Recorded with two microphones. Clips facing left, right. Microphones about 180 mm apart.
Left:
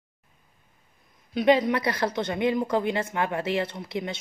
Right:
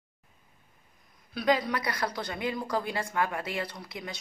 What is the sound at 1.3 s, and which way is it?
Speech, 20° left (ahead or behind).